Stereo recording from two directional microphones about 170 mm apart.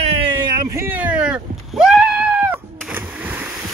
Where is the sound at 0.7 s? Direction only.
15° right (ahead or behind).